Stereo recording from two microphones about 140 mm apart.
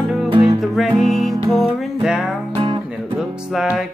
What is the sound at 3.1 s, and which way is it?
Music, 5° right (ahead or behind).